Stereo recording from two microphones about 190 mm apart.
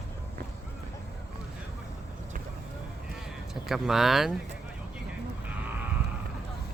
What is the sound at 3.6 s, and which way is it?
Speech, centre (ahead or behind).